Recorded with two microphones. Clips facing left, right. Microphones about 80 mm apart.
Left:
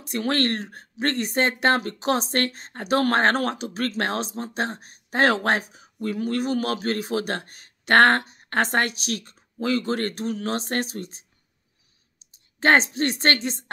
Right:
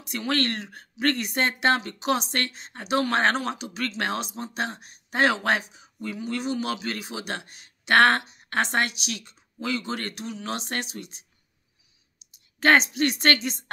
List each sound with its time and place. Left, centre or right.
0.0 s speech: left
12.5 s speech: left